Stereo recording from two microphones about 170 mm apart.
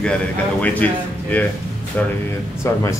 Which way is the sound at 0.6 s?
10° left (ahead or behind).